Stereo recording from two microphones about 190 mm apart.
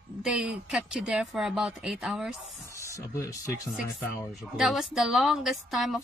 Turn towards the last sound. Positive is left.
turn(degrees=0)  # may be behind; listen again after turning